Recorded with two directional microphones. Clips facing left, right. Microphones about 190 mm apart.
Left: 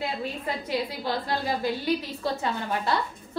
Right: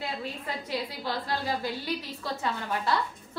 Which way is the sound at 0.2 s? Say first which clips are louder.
Left 4 dB; 20° left (ahead or behind).